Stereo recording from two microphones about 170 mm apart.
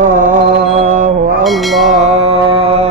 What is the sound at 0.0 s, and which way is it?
Mantra, 50° right (ahead or behind).